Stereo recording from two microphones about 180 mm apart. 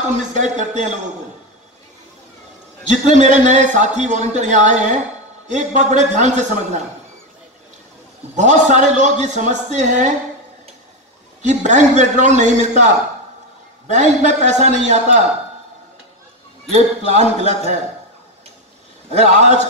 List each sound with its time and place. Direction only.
0.1 s a man's voice: 40° right (ahead or behind)
2.9 s a man's voice: 40° right (ahead or behind)
8.4 s a man's voice: 40° right (ahead or behind)
11.4 s a man's voice: 40° right (ahead or behind)
16.7 s a man's voice: 40° right (ahead or behind)
19.0 s a man's voice: 40° right (ahead or behind)